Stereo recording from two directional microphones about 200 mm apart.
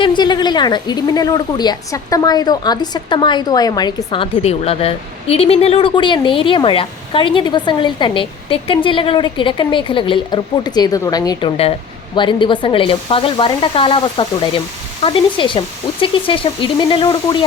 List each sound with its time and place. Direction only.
0.0 s a woman's voice: 20° left (ahead or behind)